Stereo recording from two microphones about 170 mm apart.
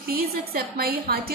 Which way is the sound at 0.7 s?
65° right (ahead or behind).